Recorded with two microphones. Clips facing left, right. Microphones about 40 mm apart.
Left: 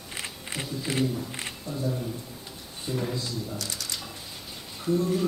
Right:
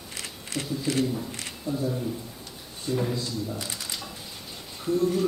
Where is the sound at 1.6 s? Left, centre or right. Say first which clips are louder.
Right 4 dB; centre.